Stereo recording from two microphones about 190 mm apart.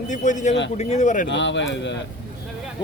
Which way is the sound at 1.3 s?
70° left (ahead or behind).